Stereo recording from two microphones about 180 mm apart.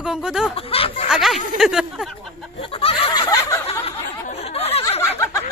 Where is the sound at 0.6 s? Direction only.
30° left (ahead or behind).